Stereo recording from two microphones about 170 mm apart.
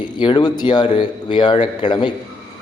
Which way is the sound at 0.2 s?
25° left (ahead or behind).